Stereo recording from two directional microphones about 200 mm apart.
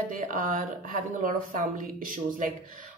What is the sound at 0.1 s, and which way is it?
Speech, 40° right (ahead or behind).